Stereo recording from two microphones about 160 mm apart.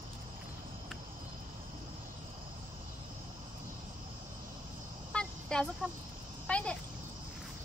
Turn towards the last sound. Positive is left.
turn(degrees=5)  # may be behind; listen again after turning